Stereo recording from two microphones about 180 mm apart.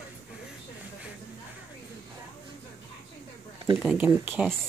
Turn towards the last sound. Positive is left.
turn(degrees=-10)  # may be behind; listen again after turning